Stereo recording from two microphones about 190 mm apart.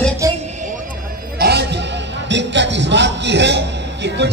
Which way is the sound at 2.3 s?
70° right (ahead or behind).